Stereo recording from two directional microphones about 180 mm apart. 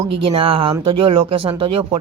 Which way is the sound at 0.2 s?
30° right (ahead or behind).